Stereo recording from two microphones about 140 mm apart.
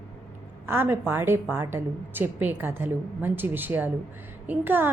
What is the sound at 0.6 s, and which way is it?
A woman's voice, 15° right (ahead or behind).